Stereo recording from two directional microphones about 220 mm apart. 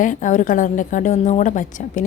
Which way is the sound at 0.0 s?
35° left (ahead or behind).